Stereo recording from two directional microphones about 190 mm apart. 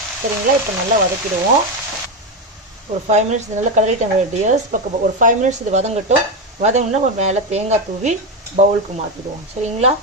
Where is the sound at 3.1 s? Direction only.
35° right (ahead or behind).